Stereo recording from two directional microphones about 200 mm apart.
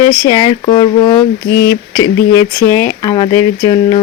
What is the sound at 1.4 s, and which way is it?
Speech, 55° left (ahead or behind).